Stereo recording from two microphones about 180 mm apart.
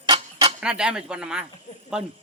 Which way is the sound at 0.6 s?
5° right (ahead or behind).